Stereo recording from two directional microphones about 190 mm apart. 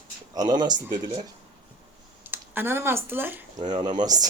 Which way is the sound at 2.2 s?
10° right (ahead or behind).